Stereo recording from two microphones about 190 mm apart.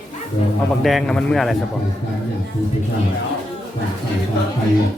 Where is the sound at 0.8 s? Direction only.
Centre (ahead or behind).